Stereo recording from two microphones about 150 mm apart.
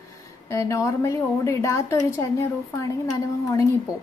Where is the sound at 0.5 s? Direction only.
20° left (ahead or behind).